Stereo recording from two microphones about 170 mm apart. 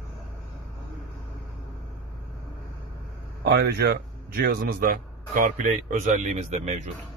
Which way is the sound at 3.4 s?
70° right (ahead or behind).